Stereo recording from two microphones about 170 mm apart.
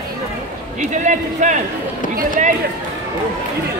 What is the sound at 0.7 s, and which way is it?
A man's voice, 45° right (ahead or behind).